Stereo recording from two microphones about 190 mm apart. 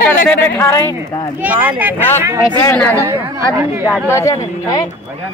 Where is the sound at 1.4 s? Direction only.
10° right (ahead or behind).